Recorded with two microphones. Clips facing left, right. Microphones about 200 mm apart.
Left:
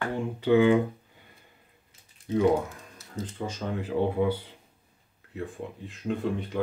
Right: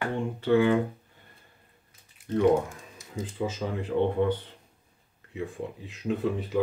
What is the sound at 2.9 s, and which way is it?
Speech, 10° right (ahead or behind).